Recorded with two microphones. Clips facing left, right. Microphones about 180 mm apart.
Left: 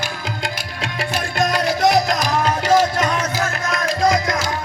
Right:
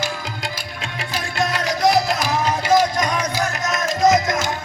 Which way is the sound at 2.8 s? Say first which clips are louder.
Left 1 dB; 10° right (ahead or behind).